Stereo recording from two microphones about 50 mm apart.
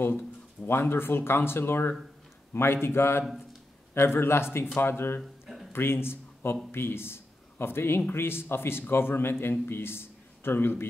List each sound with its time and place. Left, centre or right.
0.7 s a man's voice: left
5.2 s a sound: centre
5.7 s a man's voice: left